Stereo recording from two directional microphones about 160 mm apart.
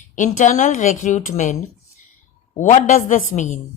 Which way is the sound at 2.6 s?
50° left (ahead or behind).